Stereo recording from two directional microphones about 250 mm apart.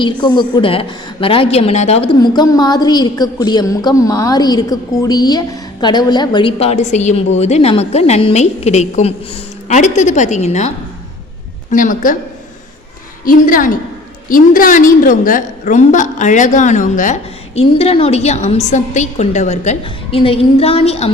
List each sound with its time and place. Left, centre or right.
0.0 s a woman's voice: centre
11.7 s a woman's voice: left
13.2 s a woman's voice: left